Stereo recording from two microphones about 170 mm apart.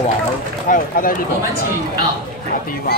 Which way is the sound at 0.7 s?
55° left (ahead or behind).